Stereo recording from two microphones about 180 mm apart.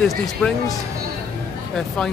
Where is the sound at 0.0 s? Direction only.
Centre (ahead or behind).